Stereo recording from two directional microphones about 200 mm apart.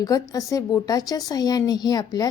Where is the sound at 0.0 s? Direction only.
15° left (ahead or behind).